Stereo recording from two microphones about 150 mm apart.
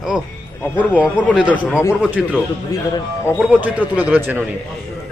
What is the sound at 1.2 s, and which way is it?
Speech, 10° right (ahead or behind).